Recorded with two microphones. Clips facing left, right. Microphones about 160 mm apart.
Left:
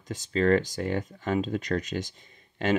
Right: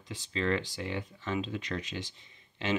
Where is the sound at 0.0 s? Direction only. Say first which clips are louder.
Left 8 dB; 45° left (ahead or behind).